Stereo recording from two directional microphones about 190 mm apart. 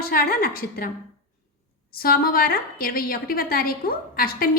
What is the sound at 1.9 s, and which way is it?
A woman's voice, 50° left (ahead or behind).